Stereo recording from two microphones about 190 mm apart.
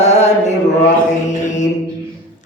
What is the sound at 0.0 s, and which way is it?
Chant, 35° left (ahead or behind).